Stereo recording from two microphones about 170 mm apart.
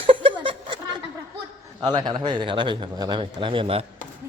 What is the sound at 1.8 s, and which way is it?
A man's voice, 25° right (ahead or behind).